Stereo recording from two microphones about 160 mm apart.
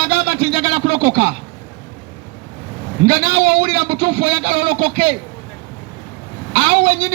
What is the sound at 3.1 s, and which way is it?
A man's voice, 30° right (ahead or behind).